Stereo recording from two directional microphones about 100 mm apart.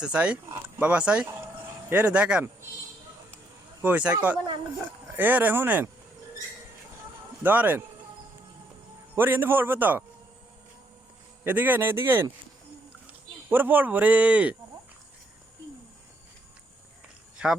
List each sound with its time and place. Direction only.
0.0 s speech: 10° right (ahead or behind)
3.8 s speech: 15° right (ahead or behind)
7.4 s speech: 15° right (ahead or behind)
9.1 s a man's voice: 20° right (ahead or behind)
11.4 s a man's voice: 20° right (ahead or behind)
13.5 s speech: 20° right (ahead or behind)
17.3 s dog: 5° right (ahead or behind)